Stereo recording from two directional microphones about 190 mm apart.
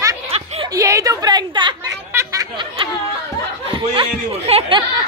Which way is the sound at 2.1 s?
20° right (ahead or behind).